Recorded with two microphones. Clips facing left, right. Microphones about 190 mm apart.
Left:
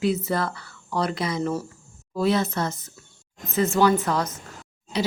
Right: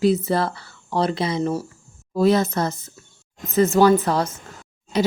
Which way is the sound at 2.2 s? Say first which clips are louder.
Right 5 dB; 40° right (ahead or behind).